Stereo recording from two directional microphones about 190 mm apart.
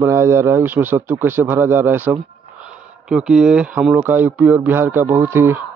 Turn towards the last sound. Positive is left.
turn(degrees=-10)  # may be behind; listen again after turning